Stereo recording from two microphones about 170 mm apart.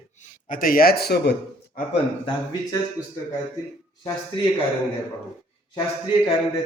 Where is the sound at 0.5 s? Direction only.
55° left (ahead or behind).